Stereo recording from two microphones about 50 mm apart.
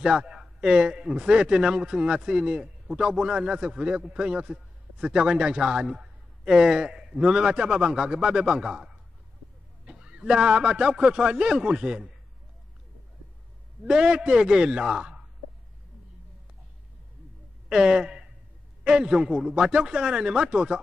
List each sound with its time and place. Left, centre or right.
0.0 s a man's voice: centre
13.8 s a man's voice: centre
17.6 s a man's voice: centre